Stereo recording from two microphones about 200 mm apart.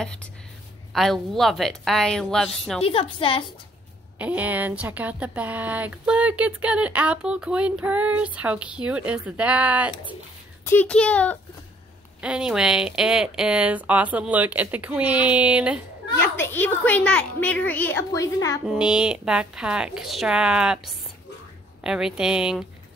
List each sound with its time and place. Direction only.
0.0 s a woman's voice: 5° left (ahead or behind)
2.8 s a woman's voice: 30° left (ahead or behind)
4.2 s speech: 5° right (ahead or behind)
10.6 s a woman's voice: 10° left (ahead or behind); by 15.8 s 5° right (ahead or behind)
16.2 s a woman's voice: 10° left (ahead or behind)
18.7 s a woman's voice: 5° right (ahead or behind)